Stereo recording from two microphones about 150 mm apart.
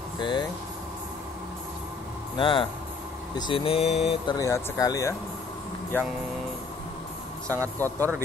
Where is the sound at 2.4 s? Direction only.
35° left (ahead or behind).